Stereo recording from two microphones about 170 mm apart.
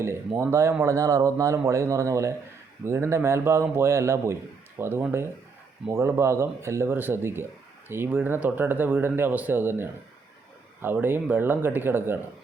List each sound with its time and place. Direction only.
0.3 s speech: 15° right (ahead or behind)